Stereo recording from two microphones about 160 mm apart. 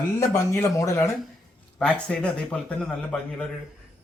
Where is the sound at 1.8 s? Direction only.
5° left (ahead or behind).